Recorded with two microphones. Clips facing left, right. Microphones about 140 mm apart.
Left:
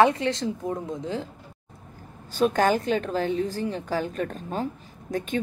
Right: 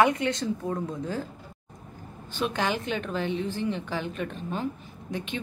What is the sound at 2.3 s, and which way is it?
A woman's voice, 40° left (ahead or behind).